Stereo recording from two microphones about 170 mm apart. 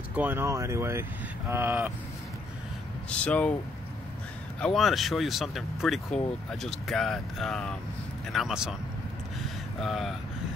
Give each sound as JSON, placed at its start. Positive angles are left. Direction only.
{"t": 0.1, "sound": "speech", "side_deg": -10}
{"t": 3.1, "sound": "speech", "side_deg": 5}
{"t": 4.6, "sound": "speech", "side_deg": 5}
{"t": 9.8, "sound": "speech", "side_deg": 0}